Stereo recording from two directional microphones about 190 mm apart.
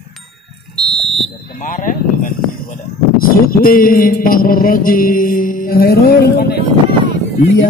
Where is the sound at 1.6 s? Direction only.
45° left (ahead or behind).